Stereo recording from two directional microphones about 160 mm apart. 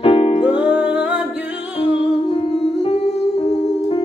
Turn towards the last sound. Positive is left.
turn(degrees=40)  # may be behind; listen again after turning